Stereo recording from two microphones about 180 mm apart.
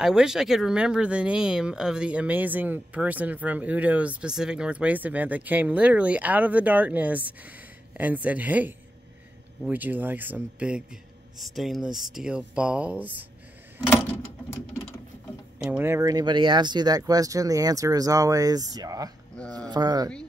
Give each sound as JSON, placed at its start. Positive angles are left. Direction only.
{"t": 0.0, "sound": "a man's voice", "side_deg": -5}
{"t": 13.8, "sound": "a sound", "side_deg": 10}
{"t": 15.6, "sound": "speech", "side_deg": -10}